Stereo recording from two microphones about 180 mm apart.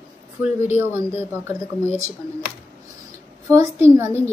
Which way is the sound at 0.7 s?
10° right (ahead or behind).